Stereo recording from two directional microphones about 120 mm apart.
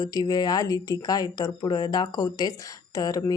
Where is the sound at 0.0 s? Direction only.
30° left (ahead or behind).